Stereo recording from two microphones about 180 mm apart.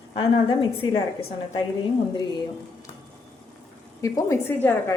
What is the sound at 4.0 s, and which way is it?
Speech, 15° left (ahead or behind).